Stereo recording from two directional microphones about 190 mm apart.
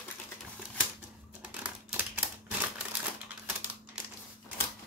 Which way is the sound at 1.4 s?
5° right (ahead or behind).